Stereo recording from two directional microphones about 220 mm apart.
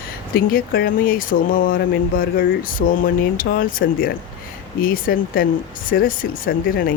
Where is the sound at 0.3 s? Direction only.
40° left (ahead or behind).